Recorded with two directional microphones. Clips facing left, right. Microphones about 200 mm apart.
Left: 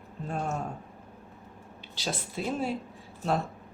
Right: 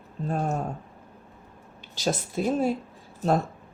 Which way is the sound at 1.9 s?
45° right (ahead or behind).